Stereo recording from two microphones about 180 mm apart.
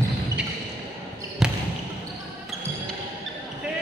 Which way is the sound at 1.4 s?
5° right (ahead or behind).